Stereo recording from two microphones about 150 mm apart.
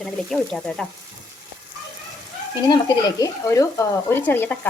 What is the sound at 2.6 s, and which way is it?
Speech, 25° left (ahead or behind).